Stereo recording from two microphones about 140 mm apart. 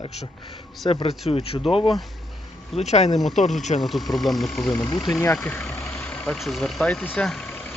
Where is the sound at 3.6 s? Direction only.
55° left (ahead or behind).